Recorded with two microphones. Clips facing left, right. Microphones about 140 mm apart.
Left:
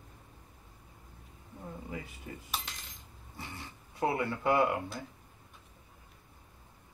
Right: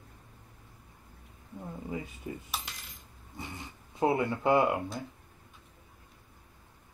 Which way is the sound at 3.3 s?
20° right (ahead or behind).